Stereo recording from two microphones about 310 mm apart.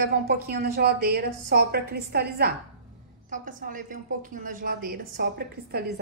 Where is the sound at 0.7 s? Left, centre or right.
Right.